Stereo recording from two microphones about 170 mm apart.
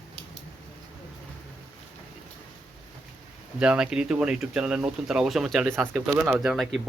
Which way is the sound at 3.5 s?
5° right (ahead or behind).